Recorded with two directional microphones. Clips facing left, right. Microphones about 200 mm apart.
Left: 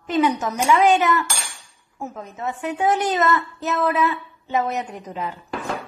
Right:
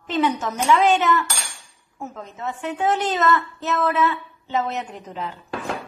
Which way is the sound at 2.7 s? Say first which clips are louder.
Left 2 dB; 15° left (ahead or behind).